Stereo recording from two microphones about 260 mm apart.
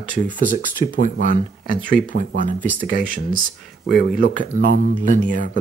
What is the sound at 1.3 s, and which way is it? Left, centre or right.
Speech, right.